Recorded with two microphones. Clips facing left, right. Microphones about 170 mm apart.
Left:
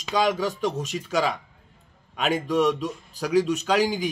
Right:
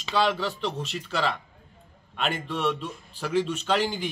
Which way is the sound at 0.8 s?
10° left (ahead or behind).